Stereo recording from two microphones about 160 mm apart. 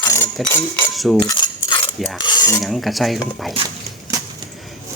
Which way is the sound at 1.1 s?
25° left (ahead or behind).